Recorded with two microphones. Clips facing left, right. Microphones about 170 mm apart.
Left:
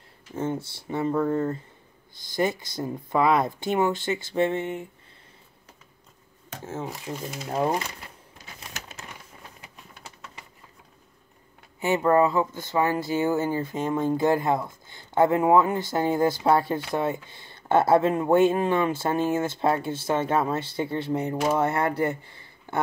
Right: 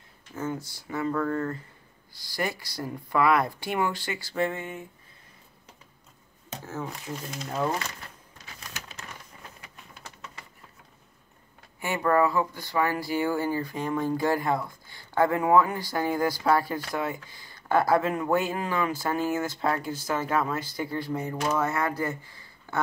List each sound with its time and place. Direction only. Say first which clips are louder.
0.4 s speech: left 4 dB; 25° left (ahead or behind)
6.6 s speech: left 2 dB; 25° left (ahead or behind)
6.9 s speech: left 3 dB; 5° left (ahead or behind)
7.7 s speech: left 4 dB; 15° left (ahead or behind)
8.9 s a sound: left 1 dB; 10° left (ahead or behind)
11.8 s speech: left 3 dB; 20° left (ahead or behind)